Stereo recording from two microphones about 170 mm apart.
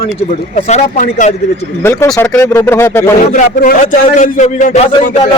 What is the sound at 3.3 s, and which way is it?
Speech, 55° left (ahead or behind).